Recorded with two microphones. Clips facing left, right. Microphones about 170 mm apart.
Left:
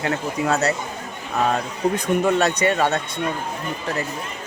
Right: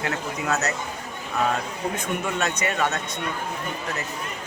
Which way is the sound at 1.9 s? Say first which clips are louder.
Left 10 dB; 35° left (ahead or behind).